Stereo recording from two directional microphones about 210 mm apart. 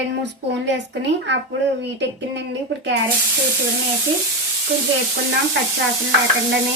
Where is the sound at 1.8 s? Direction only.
55° right (ahead or behind).